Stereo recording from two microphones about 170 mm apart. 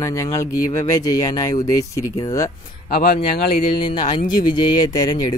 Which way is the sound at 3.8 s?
30° left (ahead or behind).